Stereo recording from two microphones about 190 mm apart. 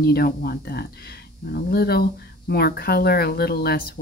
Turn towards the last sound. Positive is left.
turn(degrees=55)  # may be behind; listen again after turning